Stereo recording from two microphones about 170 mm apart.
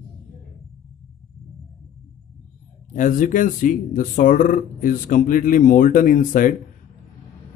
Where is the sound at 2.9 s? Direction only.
50° left (ahead or behind).